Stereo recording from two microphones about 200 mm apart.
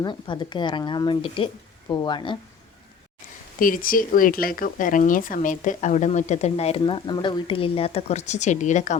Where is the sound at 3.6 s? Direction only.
45° left (ahead or behind).